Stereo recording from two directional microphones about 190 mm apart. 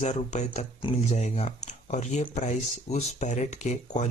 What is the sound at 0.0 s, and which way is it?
Speech, 35° left (ahead or behind).